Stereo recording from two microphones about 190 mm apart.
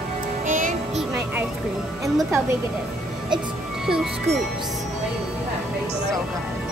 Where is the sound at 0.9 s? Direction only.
10° right (ahead or behind).